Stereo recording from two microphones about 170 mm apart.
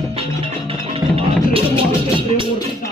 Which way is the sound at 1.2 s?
35° right (ahead or behind).